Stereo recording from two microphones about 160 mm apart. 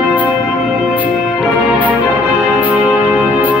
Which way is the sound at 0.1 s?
10° right (ahead or behind).